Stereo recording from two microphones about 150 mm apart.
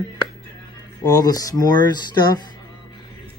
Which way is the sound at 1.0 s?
25° left (ahead or behind).